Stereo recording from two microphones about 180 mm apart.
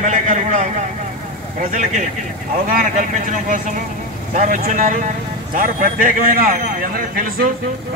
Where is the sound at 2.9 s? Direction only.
45° right (ahead or behind).